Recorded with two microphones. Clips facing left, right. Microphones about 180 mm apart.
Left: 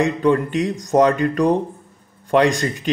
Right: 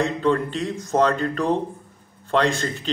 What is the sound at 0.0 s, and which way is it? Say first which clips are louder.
A man's voice: left 4 dB; 15° left (ahead or behind).